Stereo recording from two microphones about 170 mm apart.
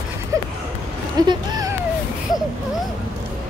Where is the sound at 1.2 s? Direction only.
25° right (ahead or behind).